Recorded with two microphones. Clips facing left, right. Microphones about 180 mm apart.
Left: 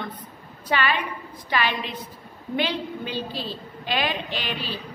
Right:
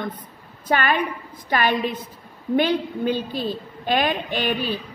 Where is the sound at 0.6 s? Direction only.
50° right (ahead or behind).